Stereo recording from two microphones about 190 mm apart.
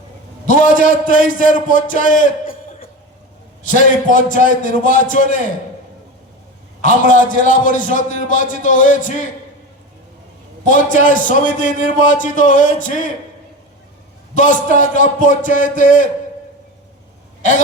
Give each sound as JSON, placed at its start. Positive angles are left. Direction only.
{"t": 0.4, "sound": "a man's voice", "side_deg": 45}
{"t": 6.8, "sound": "a man's voice", "side_deg": 40}
{"t": 10.7, "sound": "a man's voice", "side_deg": 40}
{"t": 14.3, "sound": "a man's voice", "side_deg": 40}